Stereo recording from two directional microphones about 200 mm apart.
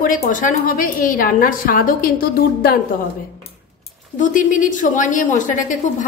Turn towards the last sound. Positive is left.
turn(degrees=40)  # may be behind; listen again after turning